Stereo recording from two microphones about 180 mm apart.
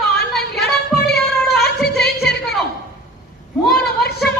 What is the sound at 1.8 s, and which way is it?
Music, 65° left (ahead or behind).